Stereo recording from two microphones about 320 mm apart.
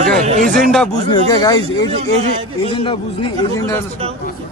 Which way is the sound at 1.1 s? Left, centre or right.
Centre.